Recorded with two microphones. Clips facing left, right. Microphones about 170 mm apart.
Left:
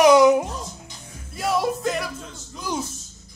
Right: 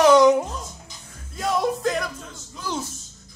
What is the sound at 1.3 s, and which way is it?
Music, 5° left (ahead or behind).